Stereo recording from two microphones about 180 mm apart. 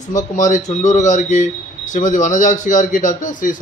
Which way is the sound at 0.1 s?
45° left (ahead or behind).